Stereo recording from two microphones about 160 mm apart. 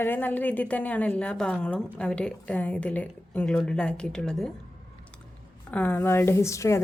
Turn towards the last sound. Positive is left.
turn(degrees=20)  # may be behind; listen again after turning